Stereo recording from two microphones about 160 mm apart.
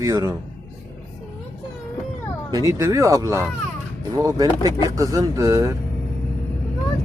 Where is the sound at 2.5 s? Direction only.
20° right (ahead or behind).